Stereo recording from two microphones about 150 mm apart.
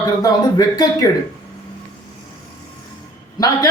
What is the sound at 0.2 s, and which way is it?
Speech, 25° left (ahead or behind).